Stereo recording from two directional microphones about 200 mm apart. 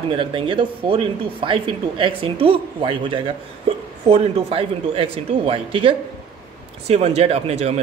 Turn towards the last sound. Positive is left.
turn(degrees=-30)  # may be behind; listen again after turning